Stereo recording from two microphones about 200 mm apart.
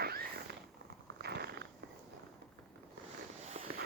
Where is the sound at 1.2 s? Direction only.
55° right (ahead or behind).